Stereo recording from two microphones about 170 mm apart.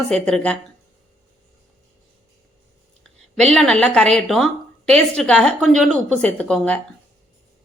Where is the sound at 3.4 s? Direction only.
5° left (ahead or behind).